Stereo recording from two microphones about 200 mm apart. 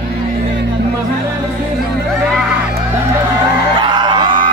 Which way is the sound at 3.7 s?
25° right (ahead or behind).